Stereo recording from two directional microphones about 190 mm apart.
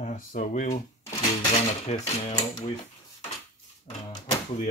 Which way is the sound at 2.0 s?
35° left (ahead or behind).